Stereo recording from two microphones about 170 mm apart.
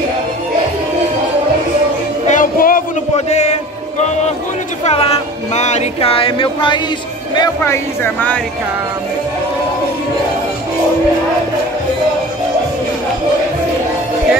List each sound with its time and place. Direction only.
2.2 s music: 50° left (ahead or behind)
3.3 s a sound: 40° left (ahead or behind)
4.8 s music: 35° left (ahead or behind)
7.6 s speech: 15° left (ahead or behind)